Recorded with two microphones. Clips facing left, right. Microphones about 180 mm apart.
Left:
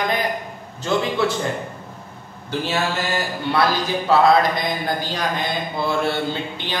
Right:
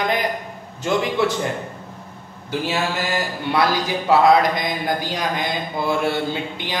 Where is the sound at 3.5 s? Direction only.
15° right (ahead or behind).